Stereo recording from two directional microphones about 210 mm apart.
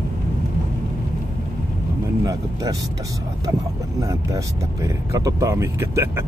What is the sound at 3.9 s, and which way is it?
Speech, 15° right (ahead or behind).